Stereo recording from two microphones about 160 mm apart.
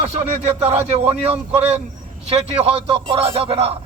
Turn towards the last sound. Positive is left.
turn(degrees=-40)  # may be behind; listen again after turning